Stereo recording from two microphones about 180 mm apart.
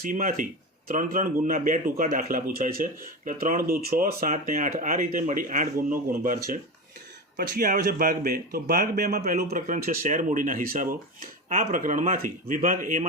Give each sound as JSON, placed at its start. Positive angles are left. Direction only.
{"t": 0.0, "sound": "a man's voice", "side_deg": -50}